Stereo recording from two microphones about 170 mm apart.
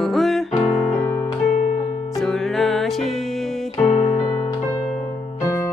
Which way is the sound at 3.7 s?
15° left (ahead or behind).